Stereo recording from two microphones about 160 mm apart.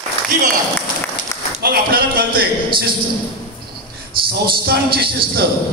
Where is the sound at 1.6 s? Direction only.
70° right (ahead or behind).